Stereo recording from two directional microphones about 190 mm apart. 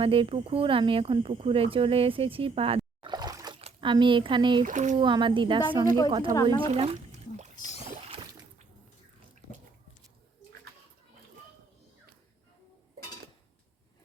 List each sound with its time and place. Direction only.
0.0 s speech: 30° right (ahead or behind)
4.6 s speech: 40° right (ahead or behind)
4.9 s speech: 25° right (ahead or behind)
6.6 s a sound: 30° right (ahead or behind)